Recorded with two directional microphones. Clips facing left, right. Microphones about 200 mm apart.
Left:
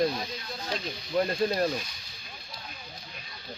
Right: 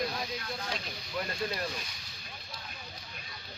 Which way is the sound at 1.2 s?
40° left (ahead or behind).